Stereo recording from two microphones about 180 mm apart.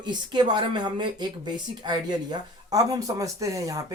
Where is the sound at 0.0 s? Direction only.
25° right (ahead or behind).